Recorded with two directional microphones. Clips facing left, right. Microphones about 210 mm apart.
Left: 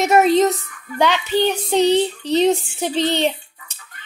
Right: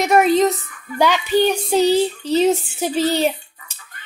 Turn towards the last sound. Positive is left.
turn(degrees=-5)  # may be behind; listen again after turning